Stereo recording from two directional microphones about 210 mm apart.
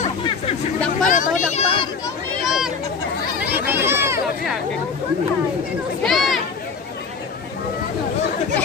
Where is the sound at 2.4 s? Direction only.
Centre (ahead or behind).